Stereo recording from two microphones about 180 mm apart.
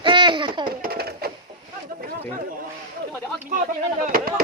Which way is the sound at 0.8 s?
60° right (ahead or behind).